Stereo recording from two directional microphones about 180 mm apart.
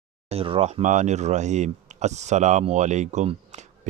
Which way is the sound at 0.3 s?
30° right (ahead or behind).